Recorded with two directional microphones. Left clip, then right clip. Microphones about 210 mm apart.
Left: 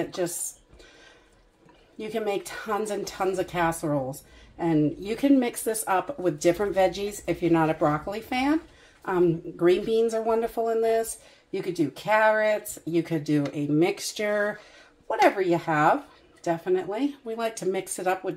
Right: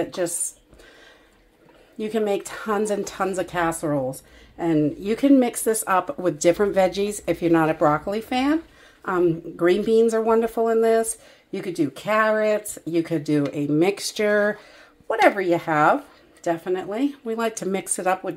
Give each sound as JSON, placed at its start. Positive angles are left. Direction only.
{"t": 2.0, "sound": "speech", "side_deg": -35}
{"t": 9.6, "sound": "speech", "side_deg": -40}